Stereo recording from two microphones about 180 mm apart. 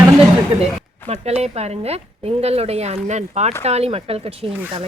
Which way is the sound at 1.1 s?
35° right (ahead or behind).